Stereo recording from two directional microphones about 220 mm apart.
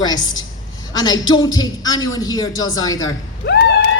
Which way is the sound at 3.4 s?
45° left (ahead or behind).